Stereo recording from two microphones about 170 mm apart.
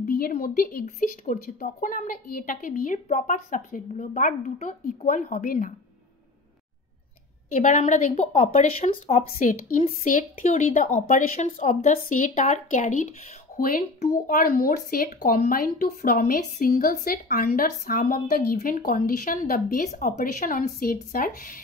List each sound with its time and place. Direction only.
0.0 s speech: 55° left (ahead or behind)
7.5 s speech: 40° left (ahead or behind)
13.6 s speech: 55° left (ahead or behind)